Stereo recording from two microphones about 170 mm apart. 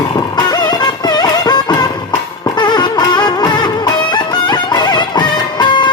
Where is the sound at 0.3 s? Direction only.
25° left (ahead or behind).